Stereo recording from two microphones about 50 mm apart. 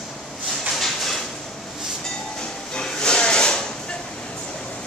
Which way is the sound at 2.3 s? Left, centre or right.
Centre.